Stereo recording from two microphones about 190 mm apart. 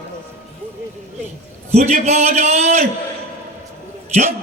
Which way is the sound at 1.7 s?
35° right (ahead or behind).